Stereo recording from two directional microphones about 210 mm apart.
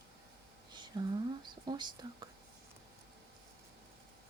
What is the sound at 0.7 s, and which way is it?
Whispering, 20° right (ahead or behind).